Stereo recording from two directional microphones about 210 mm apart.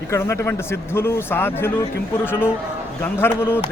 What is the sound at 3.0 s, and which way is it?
Speech, 10° left (ahead or behind).